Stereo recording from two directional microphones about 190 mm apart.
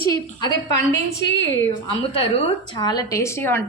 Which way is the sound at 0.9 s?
65° left (ahead or behind).